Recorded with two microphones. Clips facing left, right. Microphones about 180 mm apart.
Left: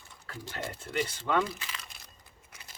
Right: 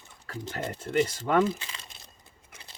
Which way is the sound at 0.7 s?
45° right (ahead or behind).